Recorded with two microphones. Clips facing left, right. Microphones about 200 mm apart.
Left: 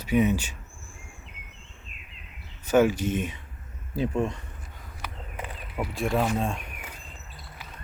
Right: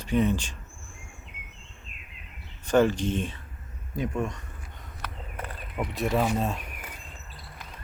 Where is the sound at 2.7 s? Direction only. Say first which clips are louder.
Left 1 dB; 10° left (ahead or behind).